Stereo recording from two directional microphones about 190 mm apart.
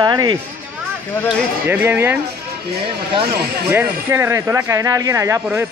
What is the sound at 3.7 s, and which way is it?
Speech, 10° right (ahead or behind).